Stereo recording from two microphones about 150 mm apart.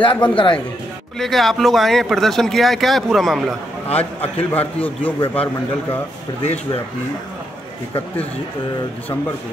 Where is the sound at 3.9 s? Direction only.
10° left (ahead or behind).